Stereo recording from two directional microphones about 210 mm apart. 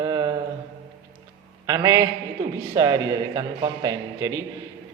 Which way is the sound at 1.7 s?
15° right (ahead or behind).